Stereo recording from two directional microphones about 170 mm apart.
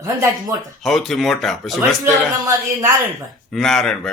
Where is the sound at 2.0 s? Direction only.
15° right (ahead or behind).